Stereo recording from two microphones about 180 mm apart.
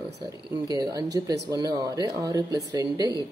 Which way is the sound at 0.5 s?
20° right (ahead or behind).